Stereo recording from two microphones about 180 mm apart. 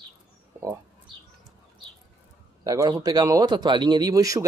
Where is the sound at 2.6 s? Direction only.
20° right (ahead or behind).